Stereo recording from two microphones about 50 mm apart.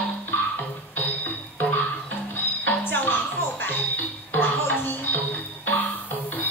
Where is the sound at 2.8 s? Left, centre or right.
Left.